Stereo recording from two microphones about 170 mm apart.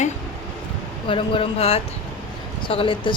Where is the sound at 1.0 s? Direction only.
30° left (ahead or behind).